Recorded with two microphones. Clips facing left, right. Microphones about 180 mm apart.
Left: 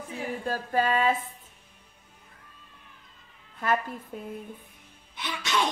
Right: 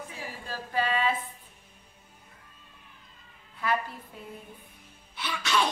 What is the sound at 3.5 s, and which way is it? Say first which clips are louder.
Speech: left 2 dB; 45° left (ahead or behind).